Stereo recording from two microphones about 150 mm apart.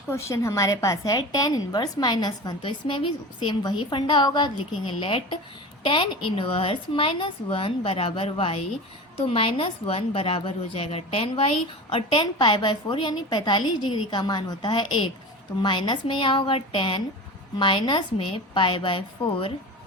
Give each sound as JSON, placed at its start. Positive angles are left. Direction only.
{"t": 0.1, "sound": "a woman's voice", "side_deg": 20}